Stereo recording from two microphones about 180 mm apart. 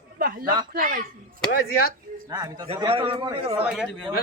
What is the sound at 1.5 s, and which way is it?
Speech, 60° left (ahead or behind).